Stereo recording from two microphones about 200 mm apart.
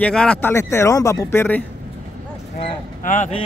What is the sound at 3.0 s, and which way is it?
Speech, 40° left (ahead or behind).